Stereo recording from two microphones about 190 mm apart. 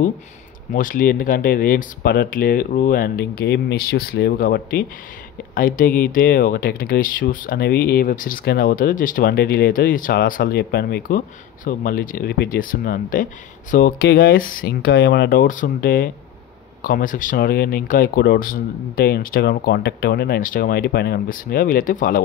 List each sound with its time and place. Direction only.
0.7 s speech: 45° left (ahead or behind)